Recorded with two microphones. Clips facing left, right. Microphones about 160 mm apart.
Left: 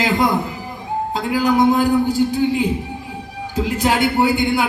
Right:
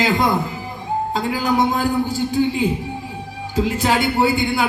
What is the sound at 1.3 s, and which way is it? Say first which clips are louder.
Speech: left 5 dB; 15° left (ahead or behind).